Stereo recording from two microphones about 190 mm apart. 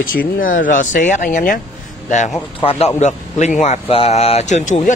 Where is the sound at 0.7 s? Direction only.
45° left (ahead or behind).